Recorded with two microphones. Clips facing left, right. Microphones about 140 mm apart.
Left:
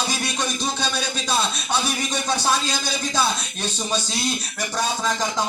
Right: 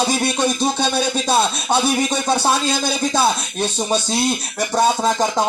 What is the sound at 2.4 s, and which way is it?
Speech, 30° right (ahead or behind).